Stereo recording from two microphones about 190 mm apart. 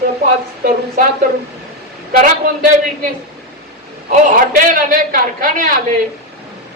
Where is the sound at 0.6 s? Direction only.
50° right (ahead or behind).